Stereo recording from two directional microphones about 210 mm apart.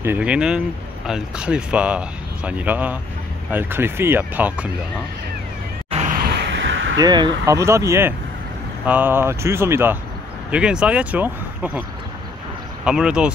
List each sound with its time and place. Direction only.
0.0 s speech: 5° right (ahead or behind)
5.9 s a sound: 35° right (ahead or behind); by 7.0 s 65° right (ahead or behind)
7.0 s speech: 20° right (ahead or behind)
12.8 s speech: 5° right (ahead or behind)